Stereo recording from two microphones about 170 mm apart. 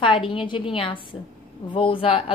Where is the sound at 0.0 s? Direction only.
30° left (ahead or behind).